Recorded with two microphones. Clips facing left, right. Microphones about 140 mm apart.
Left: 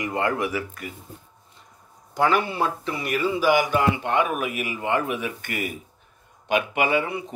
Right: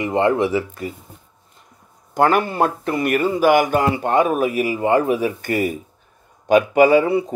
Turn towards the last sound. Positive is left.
turn(degrees=-35)  # may be behind; listen again after turning